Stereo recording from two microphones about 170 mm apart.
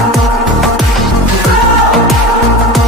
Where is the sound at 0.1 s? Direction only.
Centre (ahead or behind).